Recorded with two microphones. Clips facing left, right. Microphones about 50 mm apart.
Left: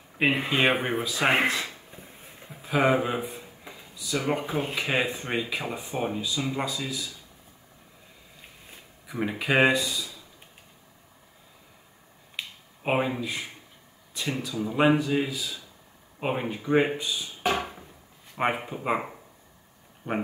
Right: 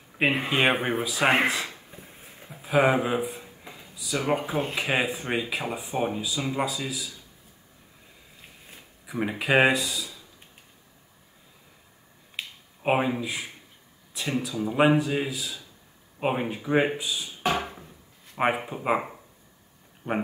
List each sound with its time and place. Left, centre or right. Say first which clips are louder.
0.3 s speech: even; centre
8.4 s a sound: even; centre
12.4 s finger snapping: even; centre
14.4 s speech: right 1 dB; centre
17.4 s a sound: even; centre
18.3 s speech: right 2 dB; centre
20.1 s speech: right 1 dB; right